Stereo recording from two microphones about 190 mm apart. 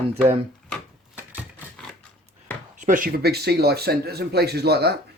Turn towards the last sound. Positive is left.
turn(degrees=-55)  # may be behind; listen again after turning